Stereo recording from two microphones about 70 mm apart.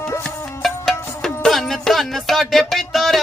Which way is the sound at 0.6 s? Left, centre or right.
Centre.